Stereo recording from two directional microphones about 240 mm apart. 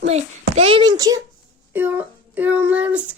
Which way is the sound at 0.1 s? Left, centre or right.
Right.